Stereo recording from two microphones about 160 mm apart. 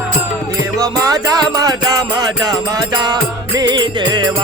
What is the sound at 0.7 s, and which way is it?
Music, 20° right (ahead or behind).